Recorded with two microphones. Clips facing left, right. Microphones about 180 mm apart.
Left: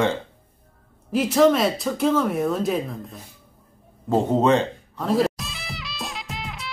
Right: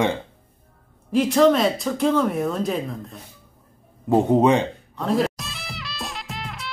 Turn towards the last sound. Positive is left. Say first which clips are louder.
# even
turn(degrees=0)  # may be behind; listen again after turning